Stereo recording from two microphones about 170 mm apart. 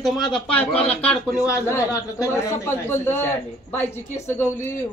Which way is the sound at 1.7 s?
20° left (ahead or behind).